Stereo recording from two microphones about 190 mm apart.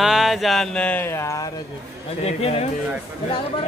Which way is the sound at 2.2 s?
30° left (ahead or behind).